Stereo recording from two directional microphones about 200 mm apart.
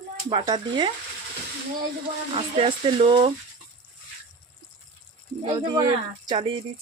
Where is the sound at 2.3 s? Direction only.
30° right (ahead or behind).